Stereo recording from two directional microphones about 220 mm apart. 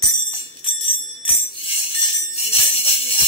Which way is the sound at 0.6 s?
25° left (ahead or behind).